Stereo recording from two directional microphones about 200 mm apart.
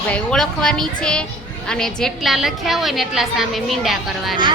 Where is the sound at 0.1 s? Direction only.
5° left (ahead or behind).